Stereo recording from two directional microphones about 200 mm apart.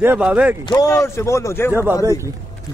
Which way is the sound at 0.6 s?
20° left (ahead or behind).